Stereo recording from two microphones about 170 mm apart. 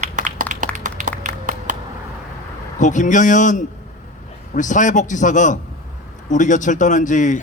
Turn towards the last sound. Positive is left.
turn(degrees=50)  # may be behind; listen again after turning